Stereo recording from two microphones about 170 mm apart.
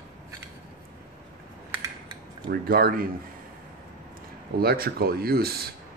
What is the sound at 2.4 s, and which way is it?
Speech, 65° right (ahead or behind).